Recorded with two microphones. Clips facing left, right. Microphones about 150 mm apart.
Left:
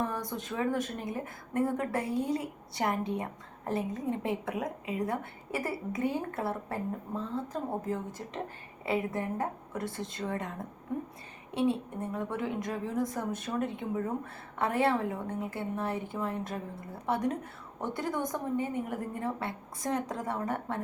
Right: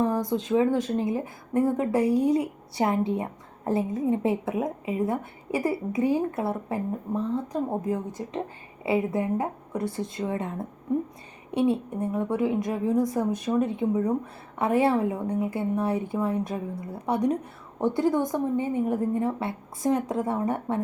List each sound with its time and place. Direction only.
0.3 s a woman's voice: 20° right (ahead or behind)
11.5 s a woman's voice: 20° right (ahead or behind)